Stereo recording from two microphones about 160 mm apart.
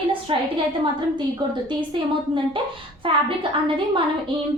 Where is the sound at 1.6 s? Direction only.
30° right (ahead or behind).